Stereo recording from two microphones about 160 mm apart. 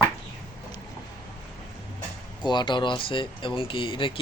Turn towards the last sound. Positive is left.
turn(degrees=30)  # may be behind; listen again after turning